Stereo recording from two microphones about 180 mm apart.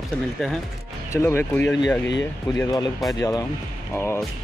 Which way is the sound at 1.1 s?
15° left (ahead or behind).